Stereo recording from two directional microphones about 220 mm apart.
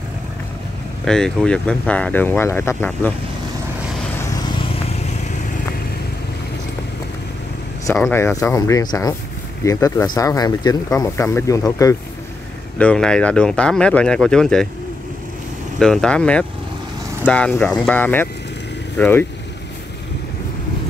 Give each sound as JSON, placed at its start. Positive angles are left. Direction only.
{"t": 1.0, "sound": "speech", "side_deg": 5}
{"t": 4.2, "sound": "vehicle", "side_deg": 15}
{"t": 7.8, "sound": "speech", "side_deg": 10}
{"t": 15.8, "sound": "speech", "side_deg": 0}